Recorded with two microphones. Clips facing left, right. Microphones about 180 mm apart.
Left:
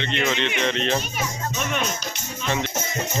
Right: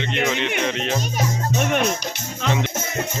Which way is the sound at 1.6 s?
55° right (ahead or behind).